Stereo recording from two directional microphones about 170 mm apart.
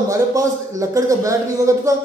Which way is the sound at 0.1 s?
20° right (ahead or behind).